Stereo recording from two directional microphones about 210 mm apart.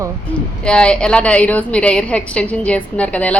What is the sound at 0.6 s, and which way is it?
A woman's voice, 5° left (ahead or behind).